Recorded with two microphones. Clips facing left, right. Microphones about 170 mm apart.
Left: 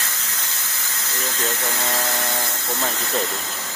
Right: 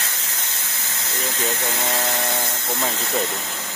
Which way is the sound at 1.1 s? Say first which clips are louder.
Right 1 dB; 20° right (ahead or behind).